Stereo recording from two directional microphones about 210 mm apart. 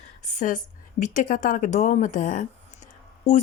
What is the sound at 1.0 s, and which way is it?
Speech, 35° left (ahead or behind).